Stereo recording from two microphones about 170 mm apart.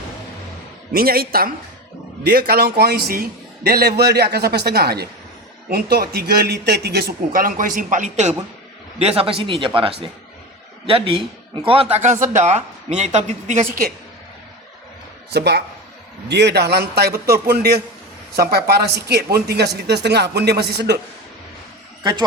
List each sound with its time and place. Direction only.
0.9 s a man's voice: 60° right (ahead or behind); by 11.9 s 30° right (ahead or behind)
12.0 s speech: 45° right (ahead or behind)
15.3 s a man's voice: 75° right (ahead or behind)